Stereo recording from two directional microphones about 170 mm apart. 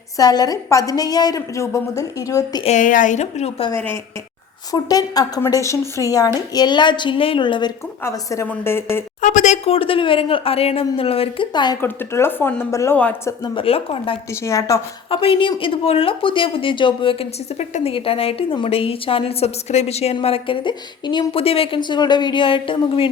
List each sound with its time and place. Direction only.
0.2 s a woman's voice: 20° left (ahead or behind)
2.6 s speech: 50° left (ahead or behind)
4.7 s a woman's voice: 20° left (ahead or behind)
8.0 s speech: 15° left (ahead or behind)
9.2 s a woman's voice: 45° left (ahead or behind); by 11.8 s 25° left (ahead or behind)
11.8 s speech: 15° left (ahead or behind)
13.4 s a woman's voice: 30° left (ahead or behind)
14.3 s speech: 15° left (ahead or behind)
15.1 s a woman's voice: 35° left (ahead or behind)